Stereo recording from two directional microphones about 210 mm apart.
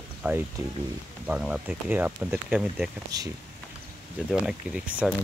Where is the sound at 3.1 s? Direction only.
20° right (ahead or behind).